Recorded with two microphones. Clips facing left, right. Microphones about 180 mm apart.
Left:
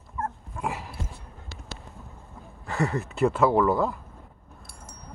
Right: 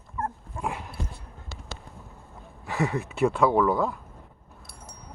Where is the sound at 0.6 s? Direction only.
Centre (ahead or behind).